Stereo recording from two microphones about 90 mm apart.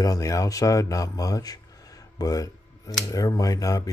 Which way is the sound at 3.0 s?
40° left (ahead or behind).